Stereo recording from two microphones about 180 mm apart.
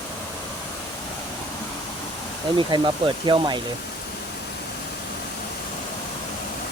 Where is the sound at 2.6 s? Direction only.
25° right (ahead or behind).